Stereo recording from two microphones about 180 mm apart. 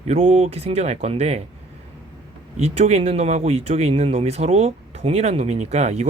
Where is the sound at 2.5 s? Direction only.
35° right (ahead or behind).